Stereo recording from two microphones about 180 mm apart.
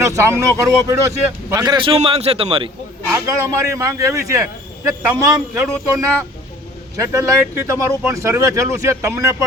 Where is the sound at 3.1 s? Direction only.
15° right (ahead or behind).